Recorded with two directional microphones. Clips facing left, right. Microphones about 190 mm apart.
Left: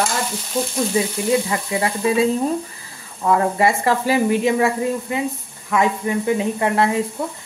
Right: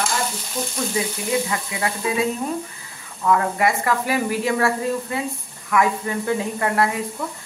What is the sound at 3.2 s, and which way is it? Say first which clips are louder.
Speech: left 2 dB; 30° left (ahead or behind).